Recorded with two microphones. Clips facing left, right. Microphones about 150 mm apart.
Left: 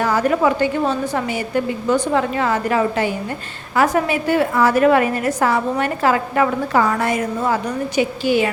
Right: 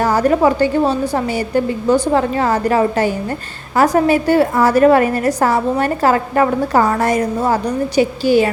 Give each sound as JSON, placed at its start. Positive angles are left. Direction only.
{"t": 0.0, "sound": "a woman's voice", "side_deg": -40}